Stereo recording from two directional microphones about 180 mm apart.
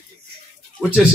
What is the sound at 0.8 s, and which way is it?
Speech, 5° right (ahead or behind).